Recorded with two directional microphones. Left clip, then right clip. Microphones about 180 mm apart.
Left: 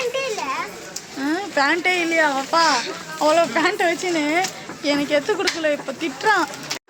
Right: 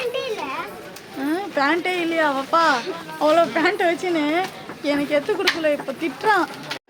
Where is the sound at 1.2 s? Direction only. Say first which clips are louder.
Left 1 dB; centre (ahead or behind).